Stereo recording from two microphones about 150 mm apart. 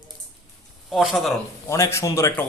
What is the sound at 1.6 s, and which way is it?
Speech, 20° left (ahead or behind).